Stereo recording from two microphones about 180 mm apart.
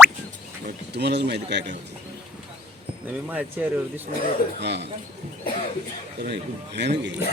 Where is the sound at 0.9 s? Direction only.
70° right (ahead or behind).